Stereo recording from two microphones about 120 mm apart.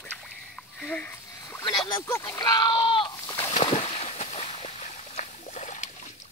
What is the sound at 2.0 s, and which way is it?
Speech, 20° left (ahead or behind).